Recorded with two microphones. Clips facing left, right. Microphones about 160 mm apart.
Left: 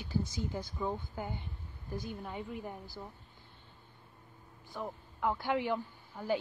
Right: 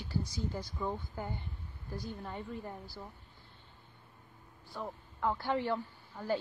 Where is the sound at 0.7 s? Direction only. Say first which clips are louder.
Left 1 dB; 5° left (ahead or behind).